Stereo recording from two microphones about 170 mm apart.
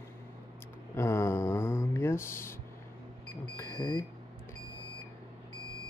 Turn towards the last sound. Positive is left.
turn(degrees=15)  # may be behind; listen again after turning